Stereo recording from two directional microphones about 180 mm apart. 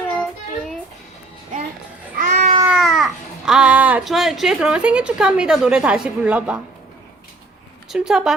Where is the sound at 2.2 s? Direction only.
40° right (ahead or behind).